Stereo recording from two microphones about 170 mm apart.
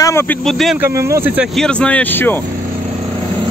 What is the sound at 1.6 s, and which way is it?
Speech, 5° left (ahead or behind).